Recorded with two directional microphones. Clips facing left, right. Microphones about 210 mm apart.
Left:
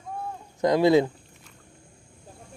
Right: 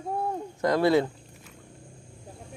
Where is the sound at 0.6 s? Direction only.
15° left (ahead or behind).